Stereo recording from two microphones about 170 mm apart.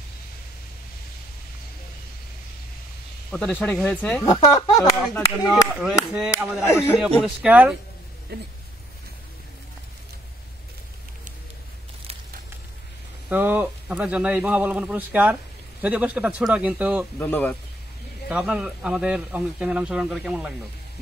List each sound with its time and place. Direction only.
3.3 s speech: 5° left (ahead or behind)
4.2 s speech: 20° left (ahead or behind)
5.5 s speech: 5° right (ahead or behind)
6.7 s speech: 15° left (ahead or behind)
7.0 s speech: 5° left (ahead or behind)
7.2 s speech: 10° right (ahead or behind)
13.3 s speech: 10° right (ahead or behind)
17.2 s speech: 10° left (ahead or behind)
18.3 s speech: 5° right (ahead or behind)